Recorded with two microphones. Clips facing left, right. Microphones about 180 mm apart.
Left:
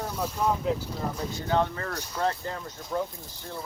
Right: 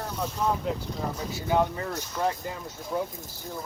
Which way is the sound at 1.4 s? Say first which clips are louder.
Right 2 dB; 10° right (ahead or behind).